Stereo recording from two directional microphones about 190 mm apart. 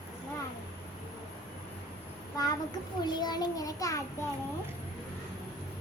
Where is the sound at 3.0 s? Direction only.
20° left (ahead or behind).